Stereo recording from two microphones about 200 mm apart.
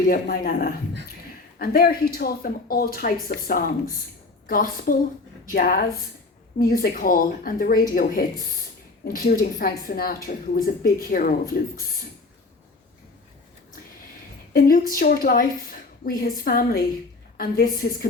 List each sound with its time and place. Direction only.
0.1 s a woman's voice: 45° left (ahead or behind)
14.5 s a woman's voice: 45° left (ahead or behind)